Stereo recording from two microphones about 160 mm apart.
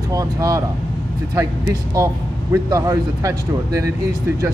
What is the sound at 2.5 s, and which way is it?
Speech, 20° right (ahead or behind).